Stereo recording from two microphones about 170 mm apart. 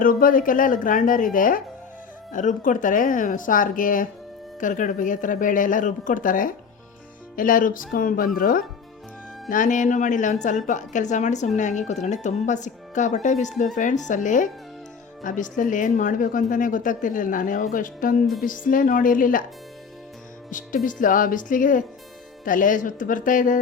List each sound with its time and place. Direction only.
0.0 s a woman's voice: 55° left (ahead or behind)
20.5 s a woman's voice: 50° left (ahead or behind)